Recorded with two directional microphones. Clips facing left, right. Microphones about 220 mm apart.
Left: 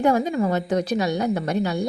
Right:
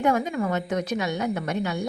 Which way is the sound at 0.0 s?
35° left (ahead or behind).